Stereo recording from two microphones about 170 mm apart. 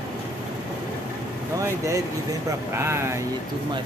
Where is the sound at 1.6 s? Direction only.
15° right (ahead or behind).